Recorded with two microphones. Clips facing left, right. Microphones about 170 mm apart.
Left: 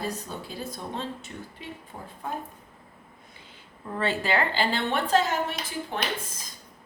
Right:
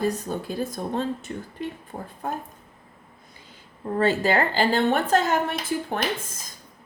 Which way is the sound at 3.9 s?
40° right (ahead or behind).